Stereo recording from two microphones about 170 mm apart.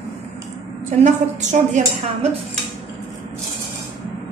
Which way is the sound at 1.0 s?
45° right (ahead or behind).